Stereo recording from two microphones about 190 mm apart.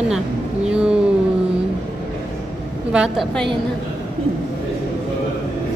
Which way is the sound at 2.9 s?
Centre (ahead or behind).